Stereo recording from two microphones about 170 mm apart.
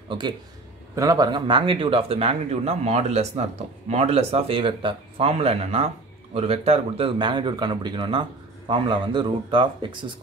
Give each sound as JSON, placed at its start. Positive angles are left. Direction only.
{"t": 0.9, "sound": "speech", "side_deg": -20}